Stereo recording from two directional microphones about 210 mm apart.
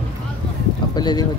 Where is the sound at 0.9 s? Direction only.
20° left (ahead or behind).